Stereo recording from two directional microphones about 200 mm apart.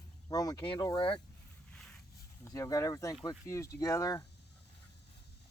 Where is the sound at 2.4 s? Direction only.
15° left (ahead or behind).